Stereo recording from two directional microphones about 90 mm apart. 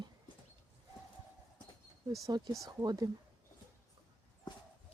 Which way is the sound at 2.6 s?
45° right (ahead or behind).